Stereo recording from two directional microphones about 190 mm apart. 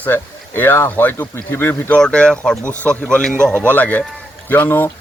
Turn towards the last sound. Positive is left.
turn(degrees=10)  # may be behind; listen again after turning